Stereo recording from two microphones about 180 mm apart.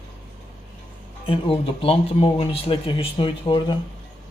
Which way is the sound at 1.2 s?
30° left (ahead or behind).